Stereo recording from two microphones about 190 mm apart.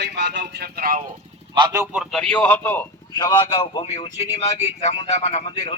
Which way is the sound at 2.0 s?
Centre (ahead or behind).